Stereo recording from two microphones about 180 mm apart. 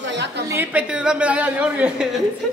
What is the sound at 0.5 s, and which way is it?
A woman's voice, 10° right (ahead or behind).